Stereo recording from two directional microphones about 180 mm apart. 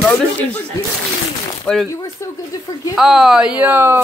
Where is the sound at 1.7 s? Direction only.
5° left (ahead or behind).